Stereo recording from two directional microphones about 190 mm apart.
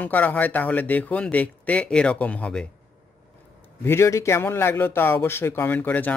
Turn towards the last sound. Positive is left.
turn(degrees=10)  # may be behind; listen again after turning